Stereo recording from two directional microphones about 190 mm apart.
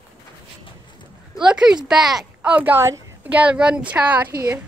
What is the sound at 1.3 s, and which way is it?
Speech, 5° right (ahead or behind).